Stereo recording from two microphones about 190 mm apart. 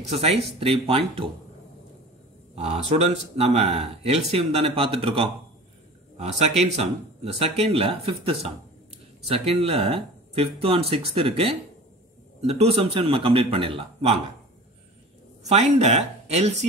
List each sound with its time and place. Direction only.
0.1 s speech: 35° right (ahead or behind)
2.5 s speech: 35° right (ahead or behind)
9.7 s a man's voice: 30° right (ahead or behind)
15.4 s speech: 35° right (ahead or behind)